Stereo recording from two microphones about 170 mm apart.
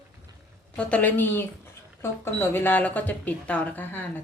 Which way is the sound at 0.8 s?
5° left (ahead or behind).